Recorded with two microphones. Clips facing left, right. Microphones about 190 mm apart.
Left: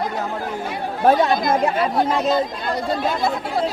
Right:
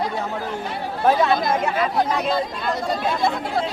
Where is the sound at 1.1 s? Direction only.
40° left (ahead or behind).